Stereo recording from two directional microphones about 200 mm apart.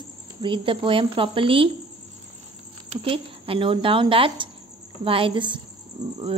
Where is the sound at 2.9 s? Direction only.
25° right (ahead or behind).